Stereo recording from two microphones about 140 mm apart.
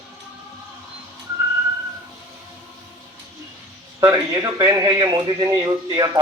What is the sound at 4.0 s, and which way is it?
Speech, 25° right (ahead or behind).